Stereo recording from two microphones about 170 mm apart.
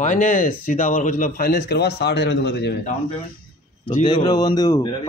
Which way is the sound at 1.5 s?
75° left (ahead or behind).